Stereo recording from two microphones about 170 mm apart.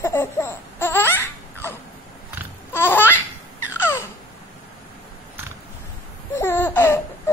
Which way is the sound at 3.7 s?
15° left (ahead or behind).